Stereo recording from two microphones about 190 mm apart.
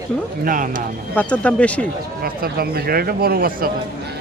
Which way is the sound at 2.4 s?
55° right (ahead or behind).